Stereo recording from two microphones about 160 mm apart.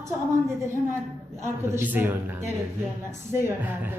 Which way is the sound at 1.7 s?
10° right (ahead or behind).